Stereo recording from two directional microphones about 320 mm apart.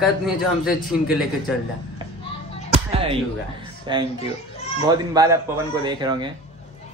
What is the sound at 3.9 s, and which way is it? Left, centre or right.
Speech, centre.